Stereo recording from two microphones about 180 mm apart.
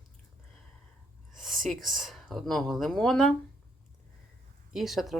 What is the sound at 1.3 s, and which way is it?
Speech, centre (ahead or behind).